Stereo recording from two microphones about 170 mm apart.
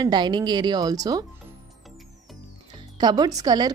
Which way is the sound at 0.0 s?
25° right (ahead or behind).